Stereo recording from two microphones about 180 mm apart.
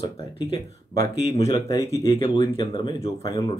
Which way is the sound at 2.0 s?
30° left (ahead or behind).